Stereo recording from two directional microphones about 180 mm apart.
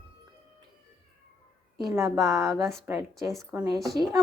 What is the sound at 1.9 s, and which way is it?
Speech, 15° right (ahead or behind).